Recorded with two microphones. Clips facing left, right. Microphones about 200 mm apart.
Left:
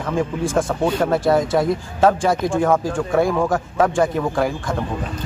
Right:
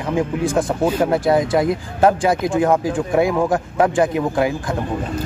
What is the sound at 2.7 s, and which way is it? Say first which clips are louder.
Speech: right 1 dB; 15° right (ahead or behind).